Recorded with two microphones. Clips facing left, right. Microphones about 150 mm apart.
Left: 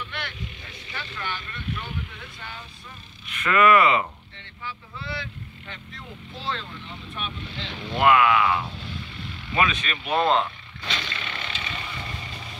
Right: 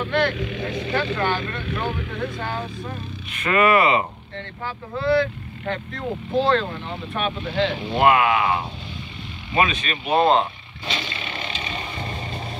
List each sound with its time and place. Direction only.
0.0 s speech: 50° right (ahead or behind)
0.3 s speech: 80° right
2.4 s speech: 65° right (ahead or behind)
3.3 s speech: 30° right (ahead or behind)
4.6 s speech: 50° right (ahead or behind); by 7.8 s 75° right (ahead or behind)
7.9 s speech: 30° right (ahead or behind)
10.9 s vehicle: 15° right (ahead or behind)